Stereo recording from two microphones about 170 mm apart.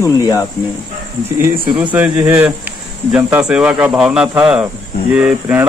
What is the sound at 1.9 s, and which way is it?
Speech, 5° right (ahead or behind).